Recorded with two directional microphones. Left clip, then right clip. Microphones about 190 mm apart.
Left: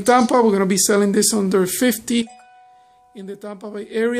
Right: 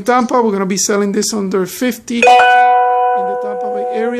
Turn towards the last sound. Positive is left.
turn(degrees=5)  # may be behind; listen again after turning